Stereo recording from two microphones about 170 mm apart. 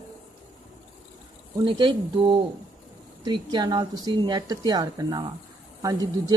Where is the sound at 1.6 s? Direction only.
30° right (ahead or behind).